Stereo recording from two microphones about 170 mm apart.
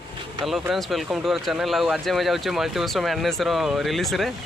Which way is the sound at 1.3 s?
Centre (ahead or behind).